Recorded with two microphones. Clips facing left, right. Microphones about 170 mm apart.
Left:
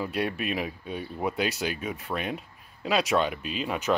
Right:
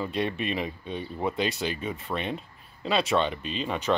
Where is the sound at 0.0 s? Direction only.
5° left (ahead or behind).